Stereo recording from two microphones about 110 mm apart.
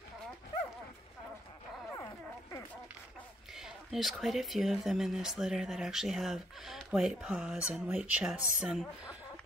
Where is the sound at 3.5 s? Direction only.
5° right (ahead or behind).